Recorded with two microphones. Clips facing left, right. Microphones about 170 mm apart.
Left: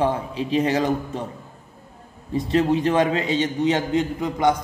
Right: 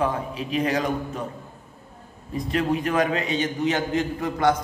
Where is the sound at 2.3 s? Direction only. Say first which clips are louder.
Left 4 dB; 30° left (ahead or behind).